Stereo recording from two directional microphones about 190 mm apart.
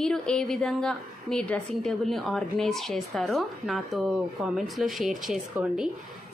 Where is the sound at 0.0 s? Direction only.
5° left (ahead or behind).